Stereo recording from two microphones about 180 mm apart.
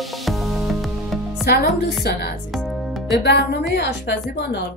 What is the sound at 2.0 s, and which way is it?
Speech, 65° left (ahead or behind).